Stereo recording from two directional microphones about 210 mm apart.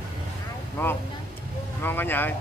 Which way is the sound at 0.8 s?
10° left (ahead or behind).